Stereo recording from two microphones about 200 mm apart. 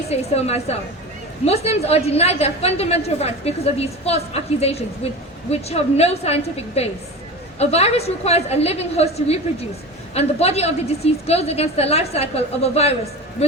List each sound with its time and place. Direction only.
0.1 s a woman's voice: 30° left (ahead or behind)